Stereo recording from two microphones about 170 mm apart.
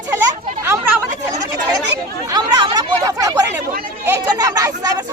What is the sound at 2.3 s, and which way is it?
Chatter, 25° right (ahead or behind).